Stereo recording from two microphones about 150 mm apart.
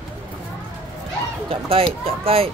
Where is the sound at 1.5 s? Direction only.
40° right (ahead or behind).